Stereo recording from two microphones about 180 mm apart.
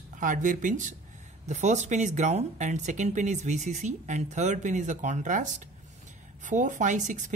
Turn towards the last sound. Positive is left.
turn(degrees=-45)  # may be behind; listen again after turning